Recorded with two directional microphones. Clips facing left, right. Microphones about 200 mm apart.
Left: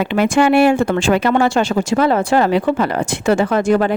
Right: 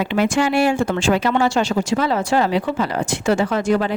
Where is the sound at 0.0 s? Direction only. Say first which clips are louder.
Left 4 dB; 55° left (ahead or behind).